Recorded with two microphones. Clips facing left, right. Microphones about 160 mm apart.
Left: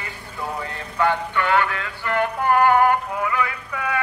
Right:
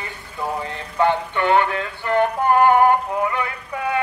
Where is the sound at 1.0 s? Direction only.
25° right (ahead or behind).